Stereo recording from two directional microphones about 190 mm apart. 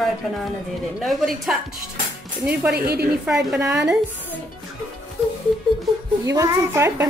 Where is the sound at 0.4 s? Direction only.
Centre (ahead or behind).